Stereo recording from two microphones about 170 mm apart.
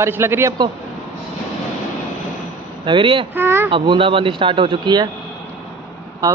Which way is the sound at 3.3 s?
15° right (ahead or behind).